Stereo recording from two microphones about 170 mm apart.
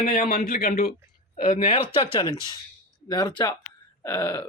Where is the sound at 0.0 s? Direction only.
55° left (ahead or behind).